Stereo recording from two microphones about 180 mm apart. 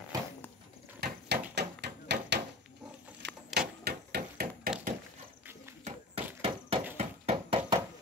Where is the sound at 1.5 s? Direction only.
70° right (ahead or behind).